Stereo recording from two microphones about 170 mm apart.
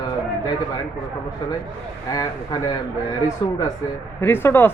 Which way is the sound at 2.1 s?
20° left (ahead or behind).